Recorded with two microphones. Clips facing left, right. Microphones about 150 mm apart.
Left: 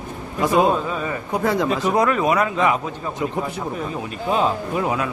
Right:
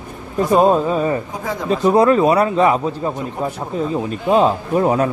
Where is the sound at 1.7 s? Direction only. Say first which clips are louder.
Right 6 dB; 30° right (ahead or behind).